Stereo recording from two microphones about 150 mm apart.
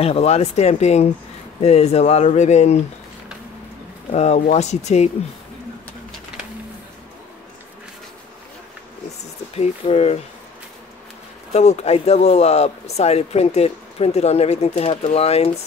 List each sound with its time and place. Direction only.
0.0 s speech: 45° left (ahead or behind)
4.1 s speech: 45° left (ahead or behind)
9.6 s speech: 45° left (ahead or behind)
11.5 s speech: 45° left (ahead or behind)